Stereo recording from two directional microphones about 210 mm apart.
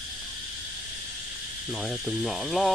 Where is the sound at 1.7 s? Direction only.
Centre (ahead or behind).